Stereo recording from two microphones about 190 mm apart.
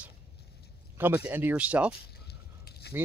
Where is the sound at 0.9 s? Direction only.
10° right (ahead or behind).